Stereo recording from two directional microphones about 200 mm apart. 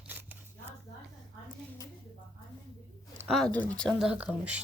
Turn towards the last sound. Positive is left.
turn(degrees=-5)  # may be behind; listen again after turning